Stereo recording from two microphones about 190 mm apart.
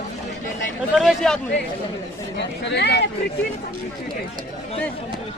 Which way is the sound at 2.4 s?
65° left (ahead or behind).